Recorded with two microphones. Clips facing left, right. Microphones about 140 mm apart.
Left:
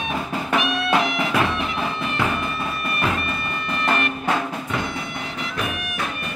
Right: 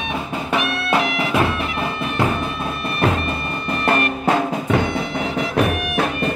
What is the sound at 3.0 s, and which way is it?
Music, 35° right (ahead or behind).